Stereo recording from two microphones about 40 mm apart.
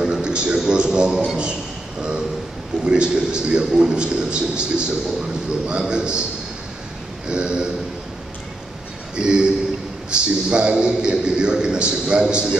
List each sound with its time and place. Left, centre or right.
0.0 s a sound: right
0.7 s a man's voice: right
7.2 s a man's voice: right
9.1 s a man's voice: right